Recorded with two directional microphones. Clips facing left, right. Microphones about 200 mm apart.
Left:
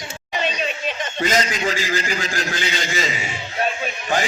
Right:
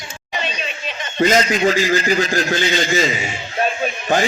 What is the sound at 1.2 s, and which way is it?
A man's voice, 45° right (ahead or behind).